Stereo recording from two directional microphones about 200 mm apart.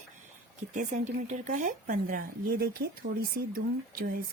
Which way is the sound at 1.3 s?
40° right (ahead or behind).